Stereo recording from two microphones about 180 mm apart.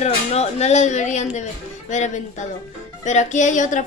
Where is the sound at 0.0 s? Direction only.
35° left (ahead or behind).